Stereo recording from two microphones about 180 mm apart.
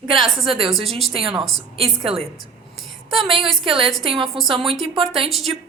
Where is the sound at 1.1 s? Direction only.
30° right (ahead or behind).